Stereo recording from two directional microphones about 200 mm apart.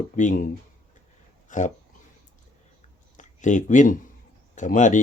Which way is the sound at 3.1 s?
40° left (ahead or behind).